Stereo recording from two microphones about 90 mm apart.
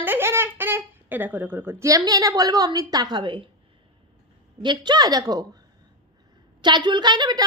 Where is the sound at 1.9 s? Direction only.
40° right (ahead or behind); by 3.5 s 65° right (ahead or behind).